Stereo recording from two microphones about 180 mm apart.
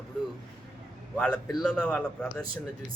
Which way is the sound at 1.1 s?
5° left (ahead or behind).